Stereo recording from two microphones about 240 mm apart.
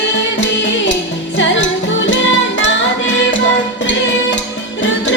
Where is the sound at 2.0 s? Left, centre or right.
Left.